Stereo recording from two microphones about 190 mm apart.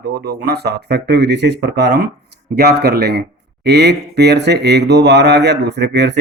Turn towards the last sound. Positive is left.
turn(degrees=-65)  # may be behind; listen again after turning